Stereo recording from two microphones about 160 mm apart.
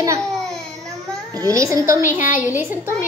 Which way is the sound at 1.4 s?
20° right (ahead or behind).